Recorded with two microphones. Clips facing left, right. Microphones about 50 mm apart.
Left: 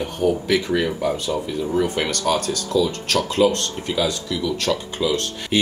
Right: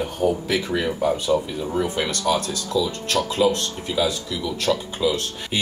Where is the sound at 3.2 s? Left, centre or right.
Centre.